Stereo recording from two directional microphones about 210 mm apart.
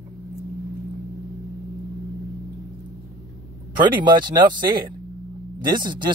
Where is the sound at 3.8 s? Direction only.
20° right (ahead or behind).